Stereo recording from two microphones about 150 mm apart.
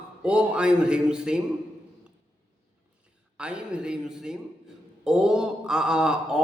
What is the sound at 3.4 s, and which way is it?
Speech, 5° right (ahead or behind).